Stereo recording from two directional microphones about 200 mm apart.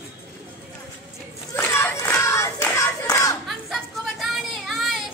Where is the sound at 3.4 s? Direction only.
Centre (ahead or behind).